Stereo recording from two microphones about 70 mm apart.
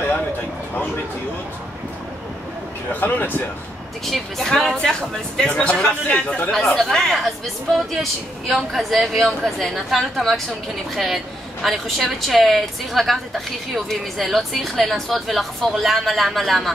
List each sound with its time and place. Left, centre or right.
2.9 s speech: left
4.0 s speech: centre
6.5 s speech: centre
11.6 s speech: centre